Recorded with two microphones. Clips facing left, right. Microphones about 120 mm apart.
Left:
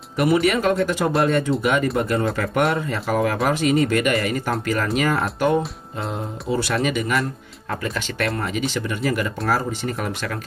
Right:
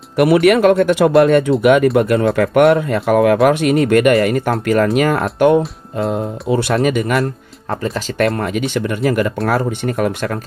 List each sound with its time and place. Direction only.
0.2 s speech: 65° right (ahead or behind)
6.8 s speech: 55° right (ahead or behind)
7.7 s speech: 30° right (ahead or behind)
8.4 s speech: 55° right (ahead or behind)